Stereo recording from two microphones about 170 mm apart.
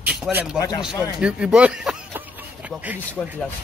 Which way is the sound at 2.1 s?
10° right (ahead or behind).